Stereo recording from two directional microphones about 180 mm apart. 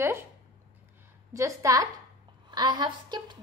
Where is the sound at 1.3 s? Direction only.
15° right (ahead or behind).